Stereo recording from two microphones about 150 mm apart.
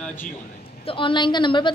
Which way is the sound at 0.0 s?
10° left (ahead or behind).